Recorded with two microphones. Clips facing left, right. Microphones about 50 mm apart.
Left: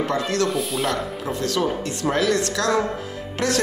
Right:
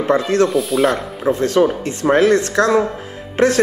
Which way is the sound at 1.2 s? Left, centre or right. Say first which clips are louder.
Right 11 dB; right.